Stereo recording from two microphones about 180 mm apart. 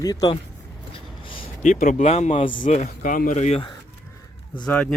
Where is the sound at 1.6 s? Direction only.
45° left (ahead or behind).